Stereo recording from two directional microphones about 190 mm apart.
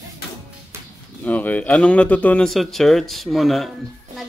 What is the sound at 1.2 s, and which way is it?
Speech, 10° left (ahead or behind).